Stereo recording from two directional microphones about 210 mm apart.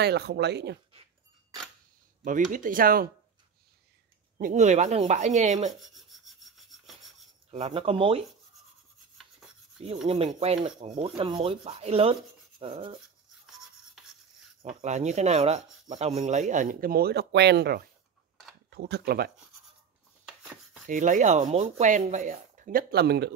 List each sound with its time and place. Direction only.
0.0 s speech: 50° right (ahead or behind)
2.2 s rub: 40° right (ahead or behind)
4.4 s rub: 35° right (ahead or behind)
5.7 s rub: centre (ahead or behind)
7.5 s rub: 30° right (ahead or behind)
10.0 s rub: 30° right (ahead or behind)
14.6 s rub: 35° right (ahead or behind); by 17.8 s 50° right (ahead or behind)
18.7 s speech: 50° right (ahead or behind)
20.8 s rub: 35° right (ahead or behind)